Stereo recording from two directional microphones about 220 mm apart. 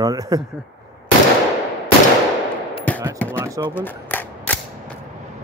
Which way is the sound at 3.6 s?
10° left (ahead or behind).